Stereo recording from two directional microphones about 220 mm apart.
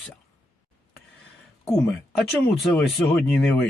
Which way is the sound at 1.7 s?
Centre (ahead or behind).